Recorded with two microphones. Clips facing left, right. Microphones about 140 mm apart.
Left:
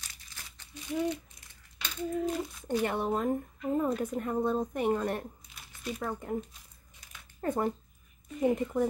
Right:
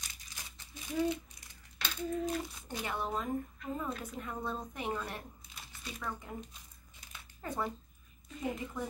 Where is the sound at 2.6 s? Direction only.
55° left (ahead or behind).